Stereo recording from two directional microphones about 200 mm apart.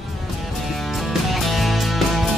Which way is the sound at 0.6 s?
Centre (ahead or behind).